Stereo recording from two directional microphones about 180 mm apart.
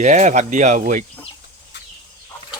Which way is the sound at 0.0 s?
45° right (ahead or behind).